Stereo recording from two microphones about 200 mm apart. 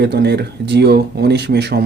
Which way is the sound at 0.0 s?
55° right (ahead or behind).